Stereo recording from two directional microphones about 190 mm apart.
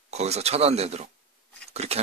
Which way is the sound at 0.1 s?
35° right (ahead or behind).